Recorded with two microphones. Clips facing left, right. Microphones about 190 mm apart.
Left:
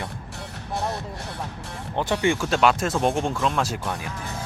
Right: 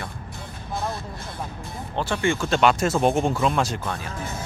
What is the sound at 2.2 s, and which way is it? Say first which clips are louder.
Speech: even; 15° left (ahead or behind).